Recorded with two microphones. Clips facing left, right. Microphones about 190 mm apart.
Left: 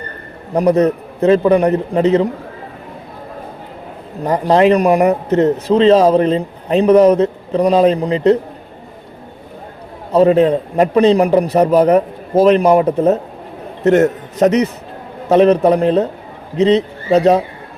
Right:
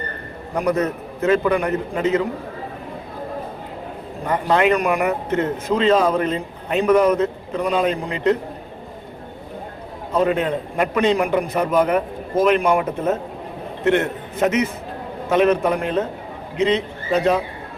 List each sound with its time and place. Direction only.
0.5 s a man's voice: 35° left (ahead or behind)
4.3 s a man's voice: 35° left (ahead or behind)
10.1 s a man's voice: 35° left (ahead or behind)